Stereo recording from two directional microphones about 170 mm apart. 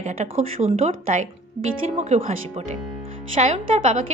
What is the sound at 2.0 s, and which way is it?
A woman's voice, 40° right (ahead or behind).